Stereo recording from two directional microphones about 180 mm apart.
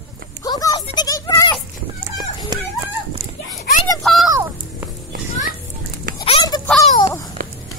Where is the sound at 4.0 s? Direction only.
Centre (ahead or behind).